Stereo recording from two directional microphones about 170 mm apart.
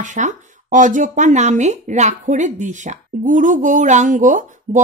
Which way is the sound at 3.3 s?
50° right (ahead or behind).